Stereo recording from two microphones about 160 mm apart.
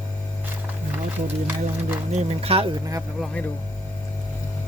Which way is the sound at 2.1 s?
40° right (ahead or behind).